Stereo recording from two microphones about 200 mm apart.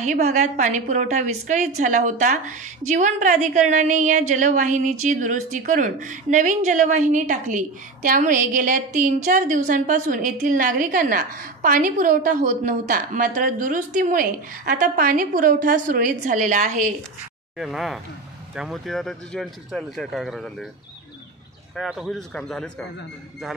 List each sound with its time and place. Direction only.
0.0 s a woman's voice: 35° right (ahead or behind)
17.6 s speech: centre (ahead or behind)
21.7 s speech: centre (ahead or behind)